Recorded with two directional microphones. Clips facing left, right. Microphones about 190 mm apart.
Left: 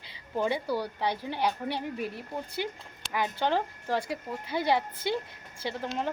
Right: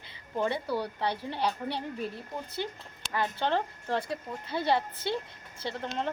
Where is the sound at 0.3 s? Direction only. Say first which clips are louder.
Left 1 dB; 5° left (ahead or behind).